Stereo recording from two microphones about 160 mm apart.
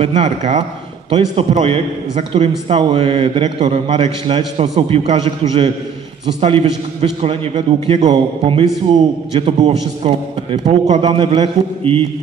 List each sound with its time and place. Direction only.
0.0 s a man's voice: 45° right (ahead or behind)